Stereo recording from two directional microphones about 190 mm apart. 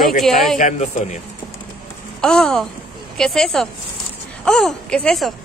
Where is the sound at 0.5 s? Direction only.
40° left (ahead or behind).